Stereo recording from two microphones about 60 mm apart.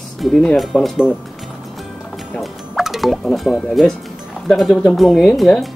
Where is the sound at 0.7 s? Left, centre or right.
Left.